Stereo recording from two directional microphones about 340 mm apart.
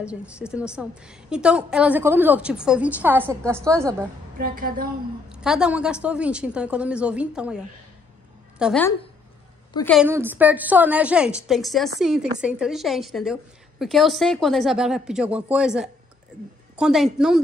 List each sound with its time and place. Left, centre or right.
0.0 s a woman's voice: centre
4.4 s a woman's voice: right
5.3 s a woman's voice: centre